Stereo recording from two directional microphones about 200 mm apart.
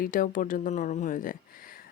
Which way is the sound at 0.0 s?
45° left (ahead or behind).